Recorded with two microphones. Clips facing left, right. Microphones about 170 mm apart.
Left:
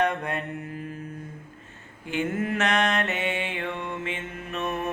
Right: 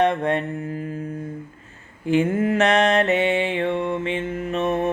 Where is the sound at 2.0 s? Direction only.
30° right (ahead or behind).